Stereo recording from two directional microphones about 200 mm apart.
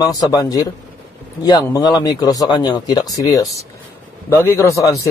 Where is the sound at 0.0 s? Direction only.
20° left (ahead or behind).